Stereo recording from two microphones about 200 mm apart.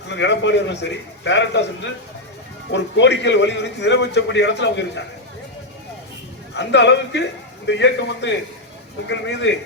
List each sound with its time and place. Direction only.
0.1 s a man's voice: 60° left (ahead or behind)
6.5 s a man's voice: 60° left (ahead or behind)